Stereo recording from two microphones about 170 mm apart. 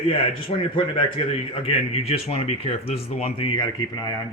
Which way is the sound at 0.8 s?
30° left (ahead or behind).